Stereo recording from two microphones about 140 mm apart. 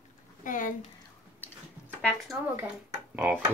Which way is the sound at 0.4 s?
70° left (ahead or behind).